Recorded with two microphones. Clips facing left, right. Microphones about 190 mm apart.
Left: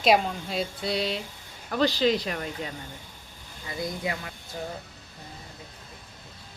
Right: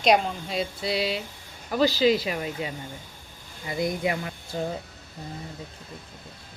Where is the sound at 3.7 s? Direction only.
20° right (ahead or behind).